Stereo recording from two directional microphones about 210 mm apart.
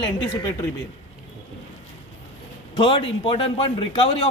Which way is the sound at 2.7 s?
20° left (ahead or behind).